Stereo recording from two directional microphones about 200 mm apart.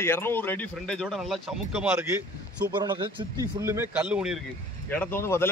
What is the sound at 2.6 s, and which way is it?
Speech, 20° right (ahead or behind).